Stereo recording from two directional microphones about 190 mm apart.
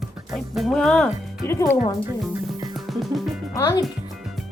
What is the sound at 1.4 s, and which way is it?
Speech, 15° left (ahead or behind).